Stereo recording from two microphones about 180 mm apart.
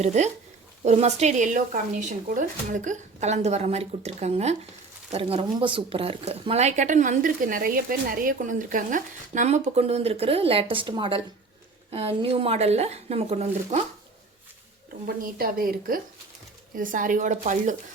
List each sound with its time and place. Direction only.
0.0 s speech: 40° right (ahead or behind)
15.0 s a woman's voice: 55° right (ahead or behind)